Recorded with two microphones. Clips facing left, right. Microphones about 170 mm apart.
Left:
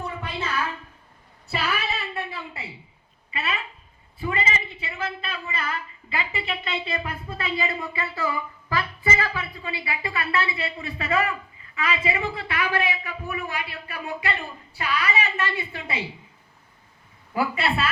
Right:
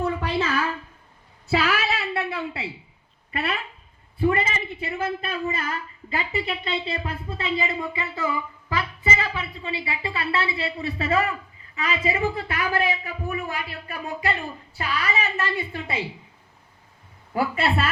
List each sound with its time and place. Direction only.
1.5 s a sound: 90° right; by 2.6 s 75° right (ahead or behind)
3.3 s a woman's voice: 60° right (ahead or behind); by 15.4 s 40° right (ahead or behind)
17.3 s a woman's voice: 50° right (ahead or behind)